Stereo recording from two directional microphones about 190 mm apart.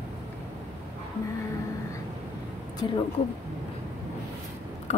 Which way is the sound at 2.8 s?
20° left (ahead or behind).